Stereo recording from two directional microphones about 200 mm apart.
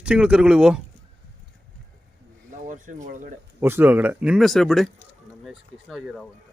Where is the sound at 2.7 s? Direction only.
40° right (ahead or behind).